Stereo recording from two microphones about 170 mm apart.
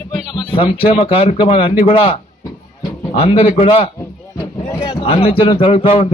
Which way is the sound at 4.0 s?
15° left (ahead or behind).